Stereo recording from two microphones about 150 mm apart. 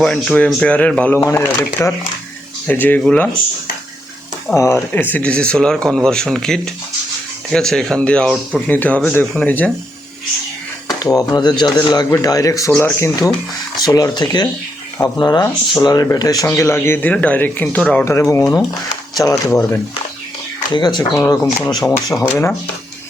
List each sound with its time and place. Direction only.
0.0 s speech: 5° left (ahead or behind)
4.5 s speech: 20° left (ahead or behind)
11.0 s speech: 25° left (ahead or behind)
20.7 s speech: 30° left (ahead or behind)
22.2 s speech: 15° left (ahead or behind)